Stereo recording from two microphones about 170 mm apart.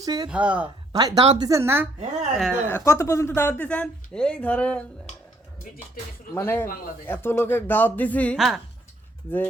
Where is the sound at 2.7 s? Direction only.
15° left (ahead or behind).